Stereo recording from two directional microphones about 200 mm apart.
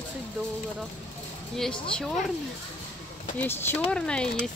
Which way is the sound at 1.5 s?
Centre (ahead or behind).